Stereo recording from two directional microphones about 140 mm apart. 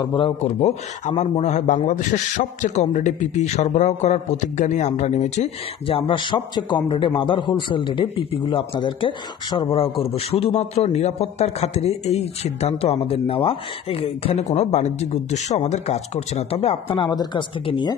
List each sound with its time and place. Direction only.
0.0 s a man's voice: 35° left (ahead or behind)
0.4 s a man's voice: 50° left (ahead or behind)